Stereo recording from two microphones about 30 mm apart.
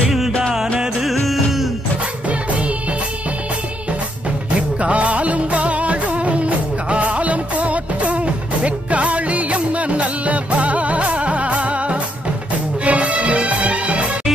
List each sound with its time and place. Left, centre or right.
1.1 s music: centre
4.6 s music: right